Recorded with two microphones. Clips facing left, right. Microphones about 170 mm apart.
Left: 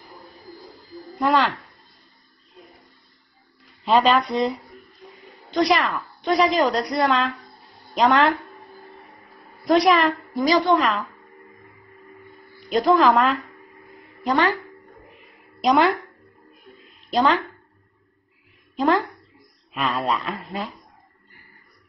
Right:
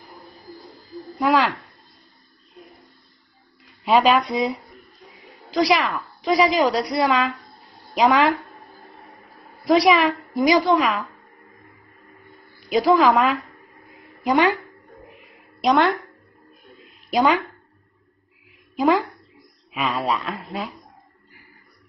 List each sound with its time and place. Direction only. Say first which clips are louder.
1.2 s a woman's voice: right 1 dB; centre (ahead or behind)
3.8 s a woman's voice: right 1 dB; 5° right (ahead or behind)
9.7 s a woman's voice: right 1 dB; 5° right (ahead or behind)
10.3 s a woman's voice: right 2 dB; 15° right (ahead or behind)
10.6 s a woman's voice: even; centre (ahead or behind)
12.5 s speech: right 1 dB; 5° right (ahead or behind)
14.3 s speech: right 2 dB; 15° right (ahead or behind)
15.6 s a woman's voice: even; centre (ahead or behind)
17.1 s speech: right 1 dB; 10° right (ahead or behind)
18.8 s a woman's voice: right 1 dB; 5° right (ahead or behind)